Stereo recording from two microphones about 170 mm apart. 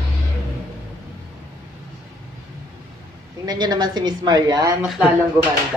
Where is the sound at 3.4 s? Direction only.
25° right (ahead or behind).